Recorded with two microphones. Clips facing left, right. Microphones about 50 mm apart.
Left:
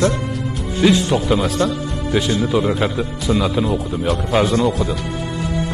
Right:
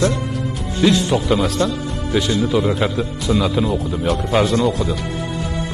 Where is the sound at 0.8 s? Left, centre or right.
Centre.